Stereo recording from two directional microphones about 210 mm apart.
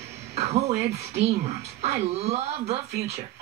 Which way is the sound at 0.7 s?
30° right (ahead or behind).